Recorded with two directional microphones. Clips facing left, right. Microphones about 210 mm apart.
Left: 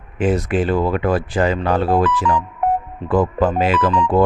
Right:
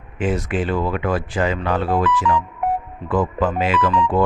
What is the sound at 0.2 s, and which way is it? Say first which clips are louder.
Speech: left 4 dB; 35° left (ahead or behind).